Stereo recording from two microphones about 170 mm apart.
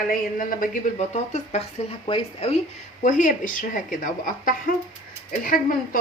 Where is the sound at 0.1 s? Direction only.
55° left (ahead or behind); by 2.6 s 35° left (ahead or behind).